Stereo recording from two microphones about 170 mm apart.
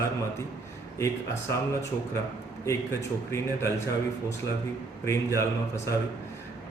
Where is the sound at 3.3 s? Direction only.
15° left (ahead or behind).